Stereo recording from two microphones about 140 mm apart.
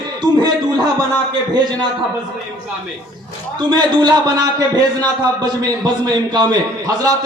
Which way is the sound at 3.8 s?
30° right (ahead or behind).